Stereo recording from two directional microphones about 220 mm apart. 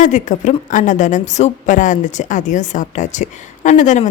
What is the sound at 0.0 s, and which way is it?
A woman's voice, 35° left (ahead or behind).